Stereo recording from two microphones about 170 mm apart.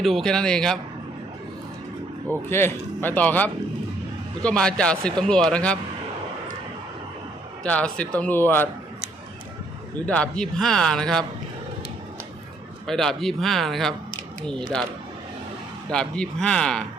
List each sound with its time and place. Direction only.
0.0 s a man's voice: centre (ahead or behind)
2.5 s a man's voice: 15° left (ahead or behind)
7.6 s speech: 5° left (ahead or behind)
10.1 s a man's voice: 5° left (ahead or behind)
12.9 s a man's voice: centre (ahead or behind)
15.9 s a man's voice: 5° left (ahead or behind)